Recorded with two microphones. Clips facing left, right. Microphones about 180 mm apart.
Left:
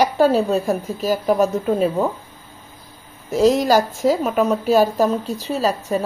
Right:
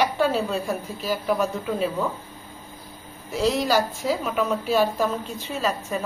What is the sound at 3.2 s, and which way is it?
A woman's voice, 45° left (ahead or behind).